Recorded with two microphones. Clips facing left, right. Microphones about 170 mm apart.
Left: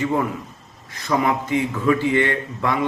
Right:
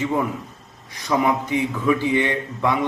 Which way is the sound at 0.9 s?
15° right (ahead or behind).